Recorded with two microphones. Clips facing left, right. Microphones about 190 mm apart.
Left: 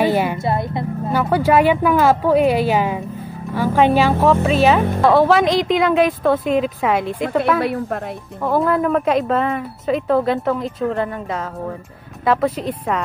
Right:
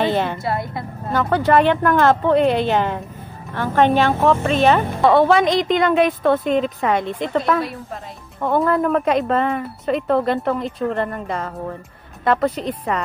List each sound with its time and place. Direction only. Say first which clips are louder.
0.0 s music: left 2 dB; 10° left (ahead or behind)
0.4 s a woman's voice: left 3 dB; 25° left (ahead or behind)
1.2 s speech: left 1 dB; 10° left (ahead or behind)
7.6 s a woman's voice: left 8 dB; 60° left (ahead or behind)
8.4 s speech: even; centre (ahead or behind)